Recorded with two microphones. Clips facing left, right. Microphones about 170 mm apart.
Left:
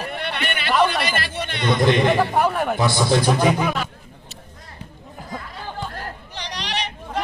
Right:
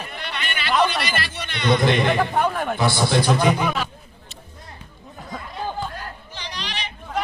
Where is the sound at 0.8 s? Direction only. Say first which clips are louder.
Left 2 dB; 50° left (ahead or behind).